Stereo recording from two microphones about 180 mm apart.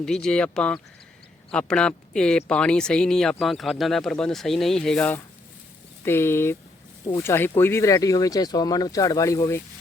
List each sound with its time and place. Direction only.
0.0 s speech: 5° left (ahead or behind)